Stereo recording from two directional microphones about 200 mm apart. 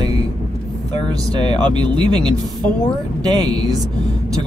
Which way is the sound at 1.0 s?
20° right (ahead or behind).